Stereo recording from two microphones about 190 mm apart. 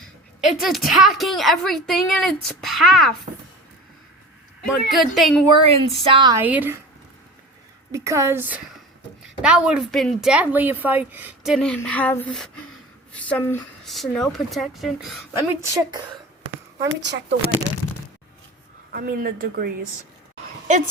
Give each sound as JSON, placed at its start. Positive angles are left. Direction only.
{"t": 0.6, "sound": "a woman's voice", "side_deg": 0}
{"t": 4.6, "sound": "a woman's voice", "side_deg": 0}
{"t": 5.5, "sound": "speech", "side_deg": -30}
{"t": 6.3, "sound": "speech", "side_deg": -10}
{"t": 7.9, "sound": "a woman's voice", "side_deg": -15}
{"t": 15.4, "sound": "speech", "side_deg": -20}
{"t": 16.9, "sound": "speech", "side_deg": -70}
{"t": 18.9, "sound": "speech", "side_deg": -50}